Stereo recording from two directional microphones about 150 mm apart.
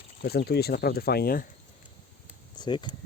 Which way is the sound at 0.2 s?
90° left.